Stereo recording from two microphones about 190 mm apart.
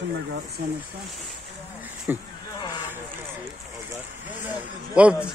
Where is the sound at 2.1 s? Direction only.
10° right (ahead or behind).